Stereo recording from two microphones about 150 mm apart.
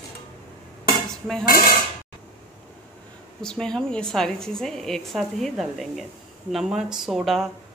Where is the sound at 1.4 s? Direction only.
75° left (ahead or behind).